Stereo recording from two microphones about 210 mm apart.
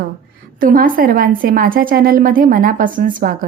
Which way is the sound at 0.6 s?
40° right (ahead or behind).